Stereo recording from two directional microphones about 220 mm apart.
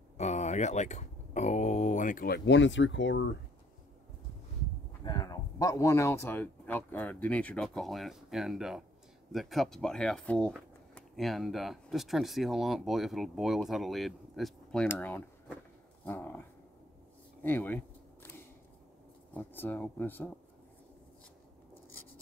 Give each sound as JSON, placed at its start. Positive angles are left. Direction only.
{"t": 0.2, "sound": "speech", "side_deg": 30}
{"t": 5.0, "sound": "speech", "side_deg": 15}
{"t": 17.4, "sound": "camera", "side_deg": 10}
{"t": 19.3, "sound": "speech", "side_deg": 10}